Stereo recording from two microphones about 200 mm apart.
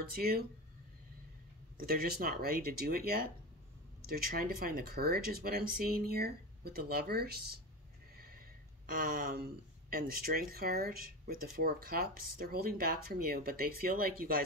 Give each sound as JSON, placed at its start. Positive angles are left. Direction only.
{"t": 0.1, "sound": "speech", "side_deg": -50}
{"t": 1.8, "sound": "speech", "side_deg": -50}